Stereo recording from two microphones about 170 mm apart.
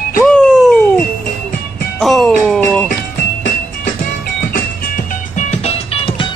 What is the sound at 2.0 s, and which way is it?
Music, centre (ahead or behind).